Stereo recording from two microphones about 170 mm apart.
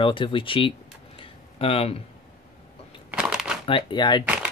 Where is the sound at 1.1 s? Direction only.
35° left (ahead or behind).